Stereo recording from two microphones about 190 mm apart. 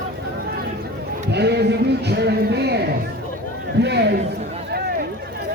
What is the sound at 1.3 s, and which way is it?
Speech, 60° right (ahead or behind).